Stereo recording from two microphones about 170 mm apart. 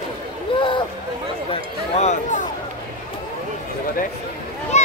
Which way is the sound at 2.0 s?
45° left (ahead or behind).